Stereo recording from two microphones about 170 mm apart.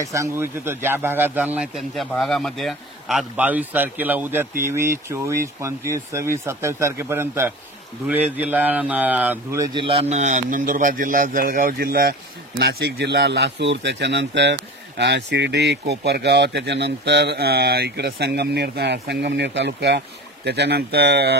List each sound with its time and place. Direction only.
0.0 s a man's voice: 20° right (ahead or behind)
9.8 s a man's voice: 35° right (ahead or behind); by 20.0 s 90° right
20.4 s a man's voice: 80° right